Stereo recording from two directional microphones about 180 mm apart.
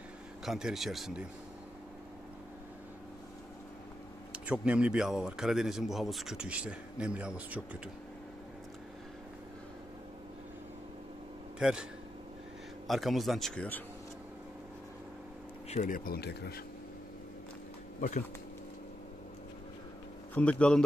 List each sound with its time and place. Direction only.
0.5 s a man's voice: centre (ahead or behind)
4.3 s a man's voice: 5° right (ahead or behind)
12.8 s a man's voice: centre (ahead or behind)
15.7 s speech: 45° left (ahead or behind); by 16.6 s 65° left (ahead or behind)
20.3 s a man's voice: 5° left (ahead or behind)